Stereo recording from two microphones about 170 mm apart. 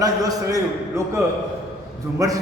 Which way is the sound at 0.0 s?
20° right (ahead or behind).